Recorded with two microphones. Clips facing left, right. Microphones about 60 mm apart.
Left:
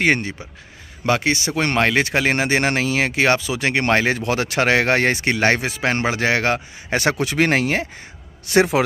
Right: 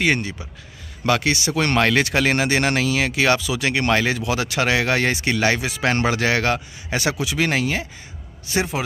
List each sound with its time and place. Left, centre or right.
0.0 s speech: left
1.0 s speech: left
7.0 s speech: left
8.5 s a man's voice: left